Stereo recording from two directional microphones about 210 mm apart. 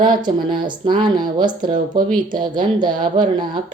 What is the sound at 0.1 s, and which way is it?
Speech, 20° right (ahead or behind).